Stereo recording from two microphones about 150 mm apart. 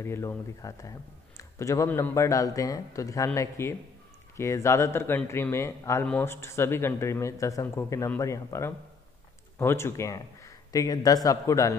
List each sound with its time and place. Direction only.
0.0 s a man's voice: 15° left (ahead or behind)